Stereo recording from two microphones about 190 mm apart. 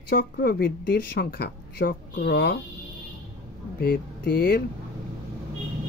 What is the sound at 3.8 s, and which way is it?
Speech, 50° left (ahead or behind).